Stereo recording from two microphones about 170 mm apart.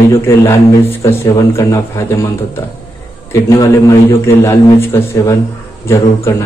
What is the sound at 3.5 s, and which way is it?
A man's voice, 20° left (ahead or behind).